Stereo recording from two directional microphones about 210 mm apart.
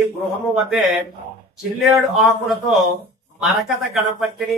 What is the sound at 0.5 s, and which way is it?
Speech, centre (ahead or behind).